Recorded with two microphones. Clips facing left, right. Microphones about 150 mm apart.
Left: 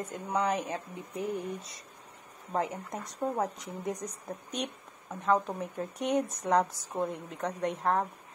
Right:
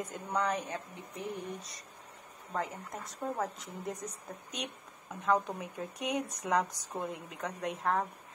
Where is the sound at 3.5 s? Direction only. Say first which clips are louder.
Left 4 dB; centre (ahead or behind).